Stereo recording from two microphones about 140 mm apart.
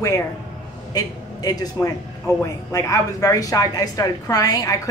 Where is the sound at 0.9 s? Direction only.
25° left (ahead or behind).